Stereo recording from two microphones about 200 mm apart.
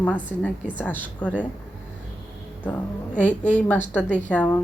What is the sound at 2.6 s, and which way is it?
A woman's voice, 5° left (ahead or behind).